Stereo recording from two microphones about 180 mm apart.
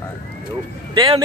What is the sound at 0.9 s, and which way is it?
Speech, 30° right (ahead or behind).